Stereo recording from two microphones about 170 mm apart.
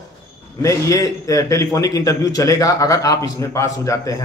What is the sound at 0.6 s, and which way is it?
A man's voice, 20° left (ahead or behind).